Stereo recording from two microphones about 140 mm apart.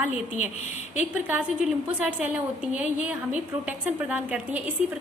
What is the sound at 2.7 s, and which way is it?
A woman's voice, 10° right (ahead or behind).